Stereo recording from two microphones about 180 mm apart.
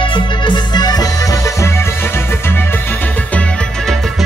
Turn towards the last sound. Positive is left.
turn(degrees=0)  # may be behind; listen again after turning